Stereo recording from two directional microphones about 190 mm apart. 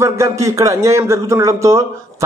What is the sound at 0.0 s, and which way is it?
A man's voice, 15° right (ahead or behind).